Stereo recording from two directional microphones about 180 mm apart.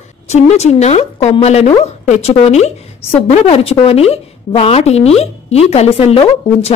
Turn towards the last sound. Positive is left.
turn(degrees=35)  # may be behind; listen again after turning